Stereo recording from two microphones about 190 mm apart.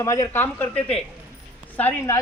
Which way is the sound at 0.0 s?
15° left (ahead or behind).